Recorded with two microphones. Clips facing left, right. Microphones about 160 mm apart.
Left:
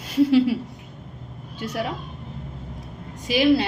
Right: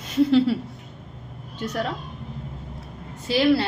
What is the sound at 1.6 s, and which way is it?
Speech, 10° left (ahead or behind).